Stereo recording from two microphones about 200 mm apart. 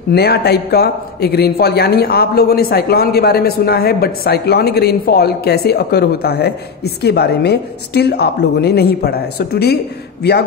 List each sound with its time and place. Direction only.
0.1 s a man's voice: 55° left (ahead or behind)